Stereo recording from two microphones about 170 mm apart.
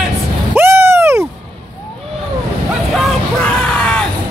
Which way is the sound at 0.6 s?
15° right (ahead or behind).